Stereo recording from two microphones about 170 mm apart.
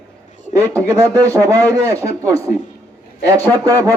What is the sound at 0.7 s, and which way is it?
Speech, 15° right (ahead or behind).